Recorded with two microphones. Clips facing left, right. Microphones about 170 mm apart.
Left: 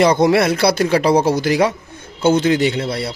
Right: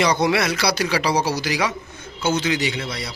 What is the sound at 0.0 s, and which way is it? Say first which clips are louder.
A man's voice: left 6 dB; 50° left (ahead or behind).